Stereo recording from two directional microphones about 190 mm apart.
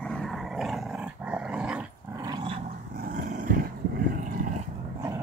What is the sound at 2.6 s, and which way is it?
Dog, 50° right (ahead or behind).